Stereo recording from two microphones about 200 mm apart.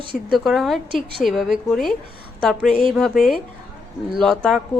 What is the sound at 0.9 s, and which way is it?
Speech, 25° right (ahead or behind).